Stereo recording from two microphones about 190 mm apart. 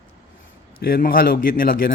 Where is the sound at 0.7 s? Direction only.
50° left (ahead or behind).